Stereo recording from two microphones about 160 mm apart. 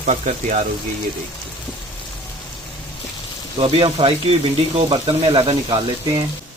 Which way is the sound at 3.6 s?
35° right (ahead or behind).